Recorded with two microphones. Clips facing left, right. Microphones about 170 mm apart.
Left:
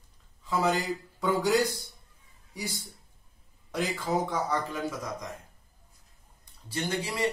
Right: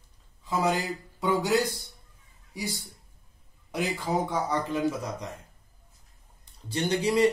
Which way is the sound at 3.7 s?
15° right (ahead or behind).